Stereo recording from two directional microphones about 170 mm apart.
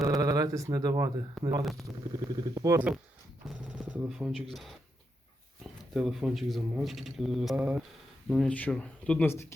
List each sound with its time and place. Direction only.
0.0 s a sound: 20° right (ahead or behind)
1.4 s speech: centre (ahead or behind)
1.8 s speech: 25° right (ahead or behind)
3.8 s speech: 5° right (ahead or behind)
5.9 s speech: centre (ahead or behind)
8.3 s speech: 5° left (ahead or behind)